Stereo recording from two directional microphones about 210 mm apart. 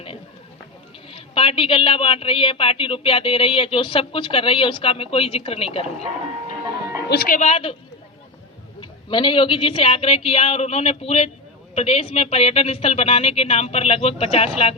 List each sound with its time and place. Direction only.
1.1 s a woman's voice: 25° left (ahead or behind)
7.1 s a woman's voice: 45° left (ahead or behind); by 7.8 s 25° left (ahead or behind)
8.8 s a woman's voice: 20° left (ahead or behind)